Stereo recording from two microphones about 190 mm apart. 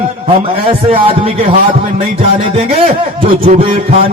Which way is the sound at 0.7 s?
30° right (ahead or behind).